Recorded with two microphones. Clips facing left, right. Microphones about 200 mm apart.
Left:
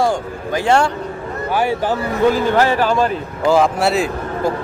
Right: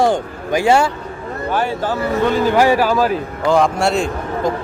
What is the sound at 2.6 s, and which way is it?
A man's voice, 10° right (ahead or behind).